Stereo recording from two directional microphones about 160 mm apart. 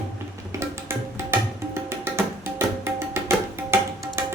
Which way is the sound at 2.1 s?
15° right (ahead or behind).